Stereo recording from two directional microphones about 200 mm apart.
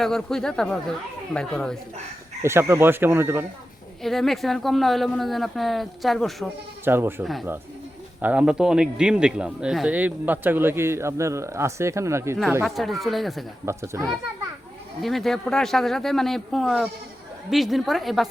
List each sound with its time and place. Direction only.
0.0 s speech: centre (ahead or behind)
2.4 s speech: 15° right (ahead or behind)
4.0 s speech: centre (ahead or behind)
6.8 s speech: 10° right (ahead or behind)
13.7 s speech: 15° right (ahead or behind)
15.0 s speech: centre (ahead or behind)